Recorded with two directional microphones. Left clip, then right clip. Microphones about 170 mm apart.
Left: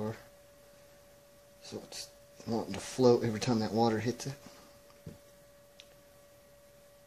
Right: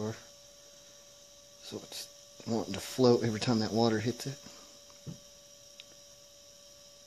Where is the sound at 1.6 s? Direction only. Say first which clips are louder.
Right 1 dB; 55° right (ahead or behind).